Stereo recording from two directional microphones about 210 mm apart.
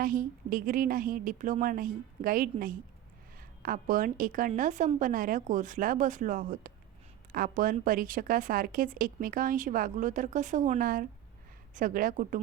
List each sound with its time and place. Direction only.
0.0 s speech: 40° right (ahead or behind)